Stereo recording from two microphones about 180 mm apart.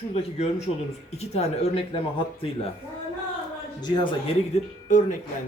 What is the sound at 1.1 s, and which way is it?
Speech, 35° left (ahead or behind).